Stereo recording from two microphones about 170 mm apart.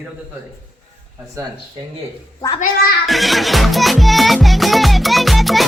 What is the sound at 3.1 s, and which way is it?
Music, centre (ahead or behind).